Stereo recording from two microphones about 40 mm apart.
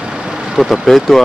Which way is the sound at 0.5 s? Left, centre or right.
Centre.